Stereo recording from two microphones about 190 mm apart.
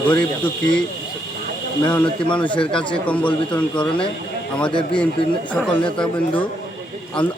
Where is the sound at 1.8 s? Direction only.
20° left (ahead or behind).